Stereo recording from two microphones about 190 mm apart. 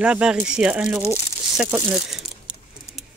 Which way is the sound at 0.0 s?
5° right (ahead or behind).